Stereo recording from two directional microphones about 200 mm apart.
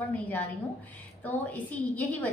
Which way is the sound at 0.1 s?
5° left (ahead or behind).